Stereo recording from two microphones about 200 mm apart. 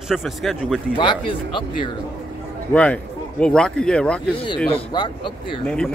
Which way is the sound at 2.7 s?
5° left (ahead or behind).